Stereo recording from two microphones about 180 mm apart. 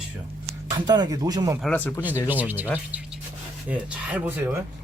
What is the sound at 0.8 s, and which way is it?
Speech, 25° right (ahead or behind).